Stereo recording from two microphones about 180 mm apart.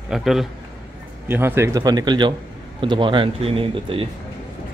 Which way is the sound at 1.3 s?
10° right (ahead or behind).